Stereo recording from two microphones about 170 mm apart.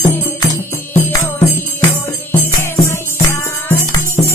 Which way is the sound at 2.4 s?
15° left (ahead or behind).